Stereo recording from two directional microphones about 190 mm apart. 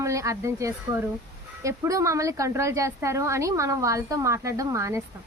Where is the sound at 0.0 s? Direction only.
15° right (ahead or behind).